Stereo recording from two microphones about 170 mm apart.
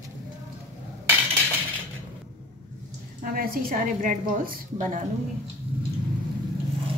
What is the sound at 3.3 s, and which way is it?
A woman's voice, 60° right (ahead or behind).